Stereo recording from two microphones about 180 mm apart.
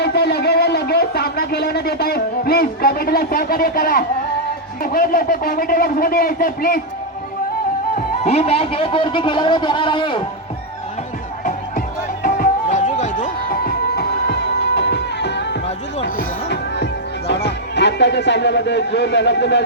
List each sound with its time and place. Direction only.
0.0 s a man's voice: 65° left (ahead or behind); by 6.8 s 50° left (ahead or behind)
7.9 s speech: 40° left (ahead or behind)
12.2 s music: 45° left (ahead or behind); by 15.5 s 75° left (ahead or behind)
15.6 s music: 40° left (ahead or behind)
16.5 s music: 70° left (ahead or behind)